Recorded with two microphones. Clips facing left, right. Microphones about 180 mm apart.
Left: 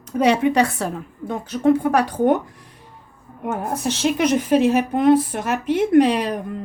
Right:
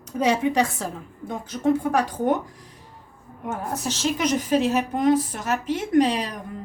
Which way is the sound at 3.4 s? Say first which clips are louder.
Left 5 dB; 60° left (ahead or behind).